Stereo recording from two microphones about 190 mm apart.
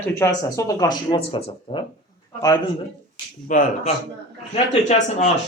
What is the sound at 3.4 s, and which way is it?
Speech, 45° left (ahead or behind).